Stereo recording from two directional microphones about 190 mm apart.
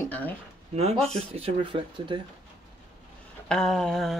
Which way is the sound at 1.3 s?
30° right (ahead or behind).